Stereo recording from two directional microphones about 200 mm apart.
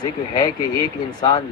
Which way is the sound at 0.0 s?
20° left (ahead or behind).